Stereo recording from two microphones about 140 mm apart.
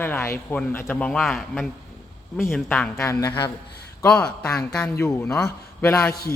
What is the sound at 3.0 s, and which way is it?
Speech, 25° left (ahead or behind).